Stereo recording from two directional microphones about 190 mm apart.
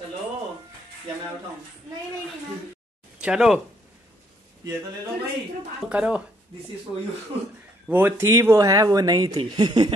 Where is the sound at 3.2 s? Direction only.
5° right (ahead or behind).